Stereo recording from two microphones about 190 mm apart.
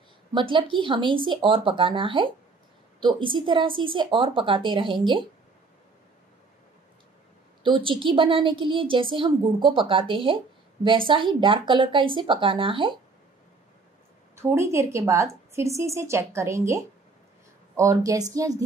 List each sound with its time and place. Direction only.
0.3 s a woman's voice: 25° right (ahead or behind)
7.6 s a woman's voice: 25° right (ahead or behind)
14.3 s a woman's voice: 15° right (ahead or behind)